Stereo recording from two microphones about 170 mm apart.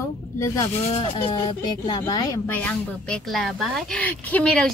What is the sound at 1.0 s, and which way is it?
Speech, 30° left (ahead or behind).